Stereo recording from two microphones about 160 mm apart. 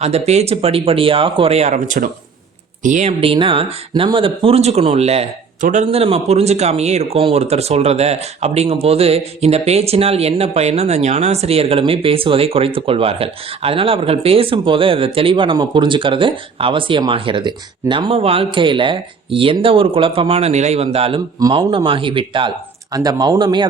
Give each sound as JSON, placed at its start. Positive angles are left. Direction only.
{"t": 0.0, "sound": "speech", "side_deg": -40}
{"t": 3.1, "sound": "speech", "side_deg": -35}